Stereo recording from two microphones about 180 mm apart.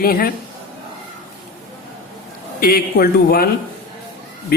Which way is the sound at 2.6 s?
55° left (ahead or behind).